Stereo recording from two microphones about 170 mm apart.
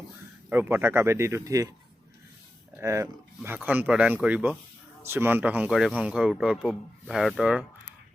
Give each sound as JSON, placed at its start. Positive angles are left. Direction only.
{"t": 0.5, "sound": "speech", "side_deg": -15}
{"t": 2.7, "sound": "speech", "side_deg": -15}